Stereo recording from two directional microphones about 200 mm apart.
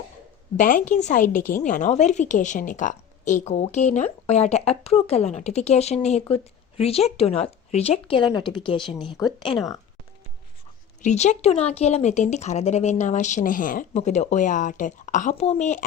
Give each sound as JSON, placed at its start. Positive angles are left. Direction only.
{"t": 0.5, "sound": "a woman's voice", "side_deg": 40}
{"t": 11.0, "sound": "a woman's voice", "side_deg": 35}